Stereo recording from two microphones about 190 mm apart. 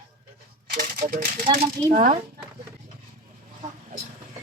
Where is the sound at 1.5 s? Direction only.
40° right (ahead or behind).